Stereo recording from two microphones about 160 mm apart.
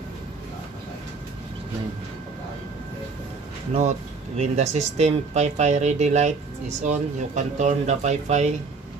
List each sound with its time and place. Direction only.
4.4 s speech: 45° right (ahead or behind)